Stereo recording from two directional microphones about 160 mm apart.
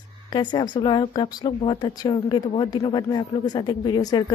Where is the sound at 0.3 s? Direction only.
30° left (ahead or behind).